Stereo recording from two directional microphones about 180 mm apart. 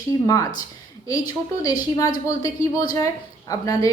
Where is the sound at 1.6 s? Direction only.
20° left (ahead or behind).